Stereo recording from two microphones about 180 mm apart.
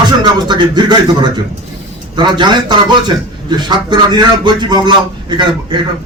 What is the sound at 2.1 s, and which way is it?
A man's voice, 25° right (ahead or behind).